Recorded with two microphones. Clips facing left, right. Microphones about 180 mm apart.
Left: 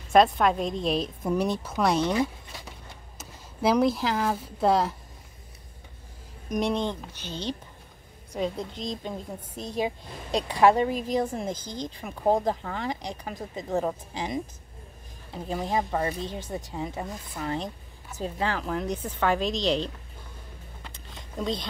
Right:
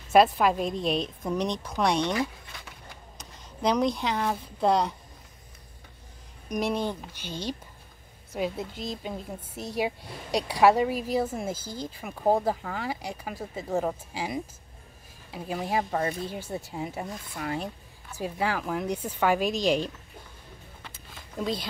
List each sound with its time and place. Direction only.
0.1 s a woman's voice: 5° right (ahead or behind)
6.5 s a woman's voice: 5° right (ahead or behind)
20.9 s a sound: 5° right (ahead or behind)